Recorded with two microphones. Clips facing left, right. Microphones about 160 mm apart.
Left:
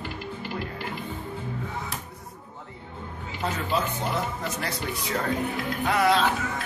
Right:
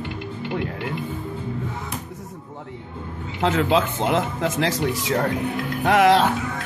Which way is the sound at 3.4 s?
90° right.